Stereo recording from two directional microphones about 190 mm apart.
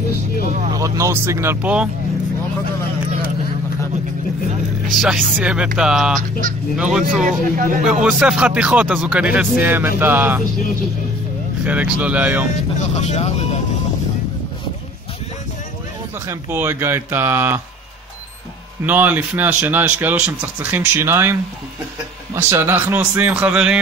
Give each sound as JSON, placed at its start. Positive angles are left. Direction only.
{"t": 0.7, "sound": "a man's voice", "side_deg": -15}
{"t": 4.9, "sound": "speech", "side_deg": 0}
{"t": 7.2, "sound": "speech", "side_deg": -45}
{"t": 7.8, "sound": "speech", "side_deg": -5}
{"t": 11.6, "sound": "a man's voice", "side_deg": -5}
{"t": 12.7, "sound": "speech", "side_deg": 35}
{"t": 16.3, "sound": "a man's voice", "side_deg": -10}
{"t": 18.9, "sound": "a man's voice", "side_deg": -10}